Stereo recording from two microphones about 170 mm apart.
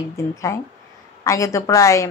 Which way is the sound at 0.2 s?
20° left (ahead or behind).